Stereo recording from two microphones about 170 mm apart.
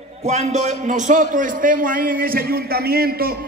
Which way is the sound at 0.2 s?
40° right (ahead or behind).